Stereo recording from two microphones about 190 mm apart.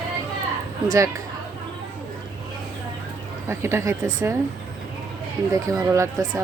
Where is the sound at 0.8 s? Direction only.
15° right (ahead or behind).